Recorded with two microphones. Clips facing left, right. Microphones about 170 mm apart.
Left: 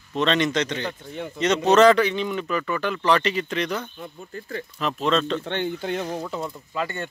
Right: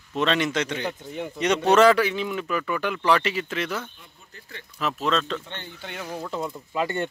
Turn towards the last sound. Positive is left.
turn(degrees=-25)  # may be behind; listen again after turning